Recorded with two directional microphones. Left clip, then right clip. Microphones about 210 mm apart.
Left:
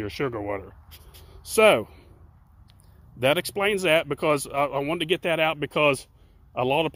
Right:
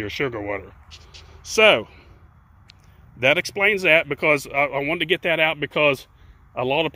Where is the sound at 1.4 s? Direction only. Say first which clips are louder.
Right 3 dB; 25° left (ahead or behind).